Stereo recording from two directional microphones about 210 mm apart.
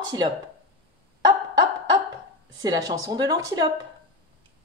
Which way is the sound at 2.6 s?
20° right (ahead or behind).